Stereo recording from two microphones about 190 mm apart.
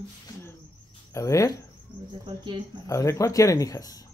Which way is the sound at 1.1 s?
15° left (ahead or behind).